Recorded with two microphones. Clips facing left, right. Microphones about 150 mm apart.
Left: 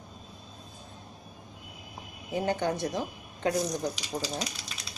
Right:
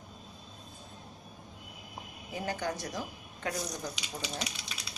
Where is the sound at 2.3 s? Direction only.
25° left (ahead or behind).